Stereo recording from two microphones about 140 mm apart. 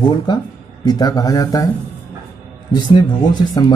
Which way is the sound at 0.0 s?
35° left (ahead or behind).